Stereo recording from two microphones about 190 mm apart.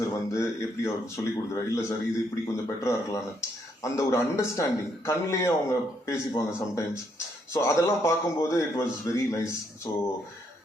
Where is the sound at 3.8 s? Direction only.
15° left (ahead or behind).